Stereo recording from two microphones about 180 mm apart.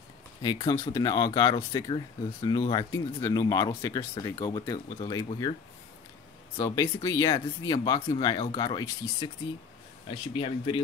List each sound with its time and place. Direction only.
0.4 s speech: 20° left (ahead or behind)
6.5 s speech: 20° left (ahead or behind)
10.3 s speech: 30° left (ahead or behind)